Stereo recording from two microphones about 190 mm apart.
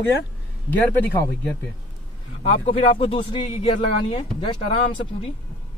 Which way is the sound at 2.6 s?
30° left (ahead or behind).